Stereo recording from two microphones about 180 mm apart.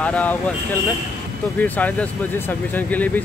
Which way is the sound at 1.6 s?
10° left (ahead or behind).